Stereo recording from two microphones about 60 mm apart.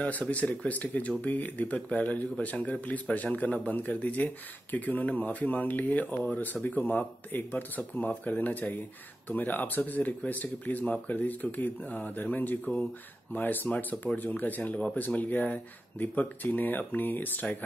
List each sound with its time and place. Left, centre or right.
0.0 s speech: left